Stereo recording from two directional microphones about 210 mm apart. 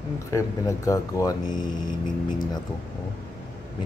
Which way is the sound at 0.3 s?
15° left (ahead or behind).